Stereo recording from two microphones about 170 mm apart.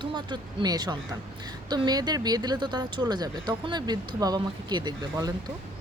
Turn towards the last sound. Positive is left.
turn(degrees=-25)  # may be behind; listen again after turning